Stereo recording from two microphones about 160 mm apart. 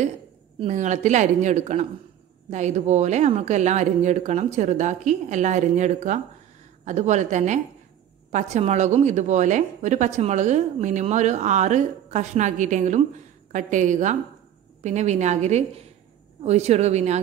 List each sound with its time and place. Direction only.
0.7 s a woman's voice: 50° right (ahead or behind)